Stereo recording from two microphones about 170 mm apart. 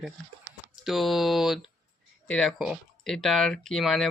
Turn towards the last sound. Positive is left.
turn(degrees=0)  # may be behind; listen again after turning